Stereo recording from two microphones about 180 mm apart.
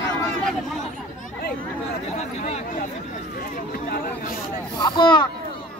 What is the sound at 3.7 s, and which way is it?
Chatter, 50° left (ahead or behind).